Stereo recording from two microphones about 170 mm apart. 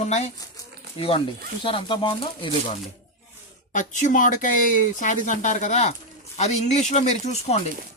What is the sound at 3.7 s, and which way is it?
Speech, 50° left (ahead or behind).